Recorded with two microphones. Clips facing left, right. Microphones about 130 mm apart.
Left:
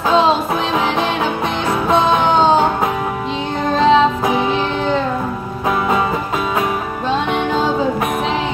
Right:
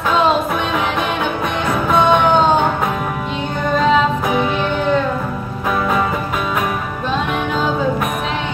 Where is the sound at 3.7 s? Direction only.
25° left (ahead or behind).